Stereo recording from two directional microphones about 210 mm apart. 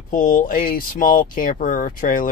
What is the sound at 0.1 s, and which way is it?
Speech, 40° left (ahead or behind).